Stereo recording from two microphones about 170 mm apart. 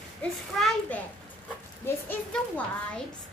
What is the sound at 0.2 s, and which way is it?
Speech, 5° left (ahead or behind).